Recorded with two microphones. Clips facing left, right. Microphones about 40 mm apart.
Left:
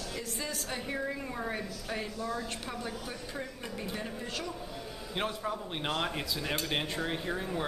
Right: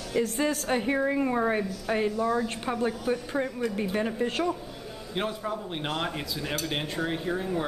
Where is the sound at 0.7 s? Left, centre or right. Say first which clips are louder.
Right 9 dB; right.